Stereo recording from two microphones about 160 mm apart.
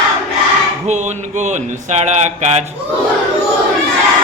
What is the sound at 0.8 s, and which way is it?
Speech, 45° right (ahead or behind).